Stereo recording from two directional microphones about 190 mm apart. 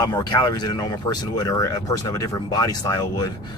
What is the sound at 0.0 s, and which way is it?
Speech, 20° left (ahead or behind).